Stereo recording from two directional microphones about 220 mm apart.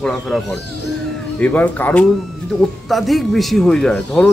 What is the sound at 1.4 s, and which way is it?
A man's voice, 5° left (ahead or behind).